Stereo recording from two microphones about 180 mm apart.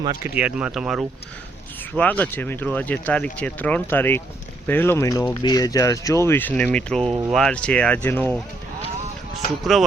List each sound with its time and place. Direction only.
0.0 s speech: 20° right (ahead or behind)
0.3 s speech: 5° right (ahead or behind)
2.0 s speech: 10° left (ahead or behind)
9.7 s speech: centre (ahead or behind)